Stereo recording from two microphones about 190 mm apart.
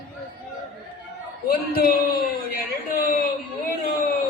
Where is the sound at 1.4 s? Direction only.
50° left (ahead or behind).